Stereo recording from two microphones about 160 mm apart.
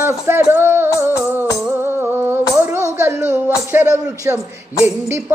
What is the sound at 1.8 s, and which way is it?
Humming, 15° right (ahead or behind).